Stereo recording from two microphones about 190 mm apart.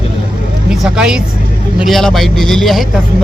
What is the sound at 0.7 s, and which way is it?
Speech, 5° right (ahead or behind).